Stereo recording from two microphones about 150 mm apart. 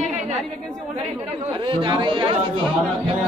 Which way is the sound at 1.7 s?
35° right (ahead or behind).